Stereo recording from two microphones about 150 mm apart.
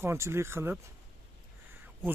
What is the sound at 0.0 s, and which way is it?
Speech, 15° right (ahead or behind).